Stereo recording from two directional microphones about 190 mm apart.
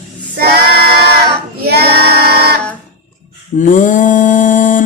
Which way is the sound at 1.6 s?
55° right (ahead or behind).